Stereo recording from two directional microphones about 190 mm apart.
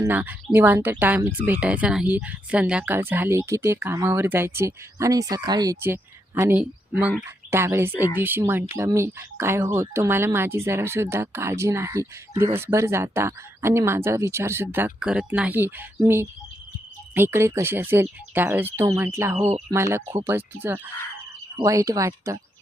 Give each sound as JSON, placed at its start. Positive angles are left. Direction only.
{"t": 0.0, "sound": "speech", "side_deg": -10}
{"t": 17.2, "sound": "speech", "side_deg": -10}
{"t": 19.4, "sound": "speech", "side_deg": -35}
{"t": 19.7, "sound": "speech", "side_deg": -15}